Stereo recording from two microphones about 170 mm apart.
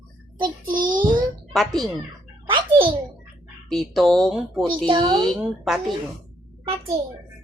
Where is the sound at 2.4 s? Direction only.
30° right (ahead or behind).